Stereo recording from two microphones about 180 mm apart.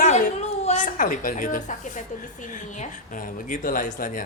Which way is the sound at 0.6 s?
40° left (ahead or behind).